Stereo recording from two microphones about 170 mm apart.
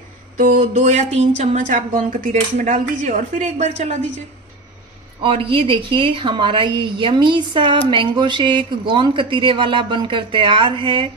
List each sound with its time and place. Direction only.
0.4 s a woman's voice: 50° right (ahead or behind)
5.2 s speech: 30° right (ahead or behind)